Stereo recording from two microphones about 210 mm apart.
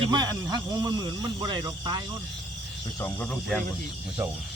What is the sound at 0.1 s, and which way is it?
Speech, 20° right (ahead or behind).